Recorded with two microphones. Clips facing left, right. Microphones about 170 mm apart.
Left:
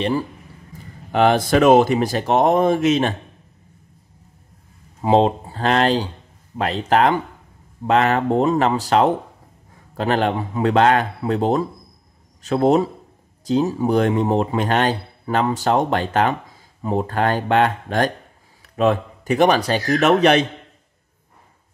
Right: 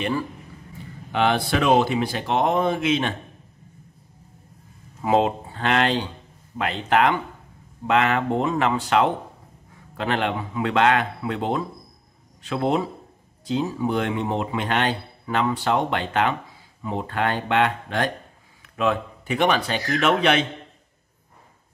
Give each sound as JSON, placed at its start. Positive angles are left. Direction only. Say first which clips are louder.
{"t": 1.1, "sound": "speech", "louder": "left 6 dB", "side_deg": 45}
{"t": 5.0, "sound": "a man's voice", "louder": "left 4 dB", "side_deg": 30}